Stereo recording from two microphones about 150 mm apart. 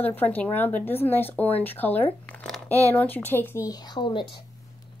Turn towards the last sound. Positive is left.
turn(degrees=30)  # may be behind; listen again after turning